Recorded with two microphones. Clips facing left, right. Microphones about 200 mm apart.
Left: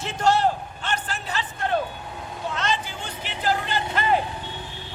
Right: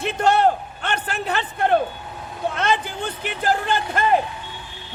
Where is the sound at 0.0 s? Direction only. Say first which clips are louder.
Right 3 dB; 60° right (ahead or behind).